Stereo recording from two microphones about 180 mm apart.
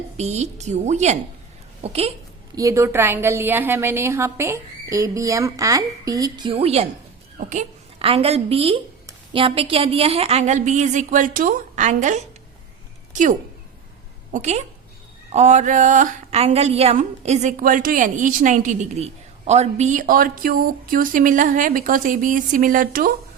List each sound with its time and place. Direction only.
0.2 s a woman's voice: 40° right (ahead or behind)
2.6 s a woman's voice: 15° right (ahead or behind); by 12.2 s 40° right (ahead or behind)
14.3 s a woman's voice: 40° right (ahead or behind)